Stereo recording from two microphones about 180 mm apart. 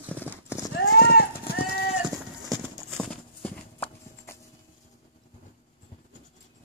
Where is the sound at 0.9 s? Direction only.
60° left (ahead or behind).